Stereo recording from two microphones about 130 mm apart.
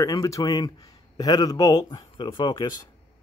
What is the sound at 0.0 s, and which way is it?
Speech, 25° left (ahead or behind).